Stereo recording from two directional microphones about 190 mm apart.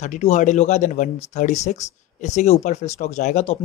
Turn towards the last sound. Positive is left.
turn(degrees=35)  # may be behind; listen again after turning